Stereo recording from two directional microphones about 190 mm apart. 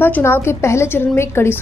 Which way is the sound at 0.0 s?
10° left (ahead or behind).